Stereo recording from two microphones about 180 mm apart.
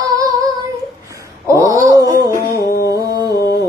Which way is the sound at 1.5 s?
15° right (ahead or behind).